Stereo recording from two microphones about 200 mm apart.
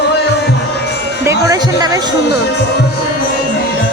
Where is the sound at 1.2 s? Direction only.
15° right (ahead or behind).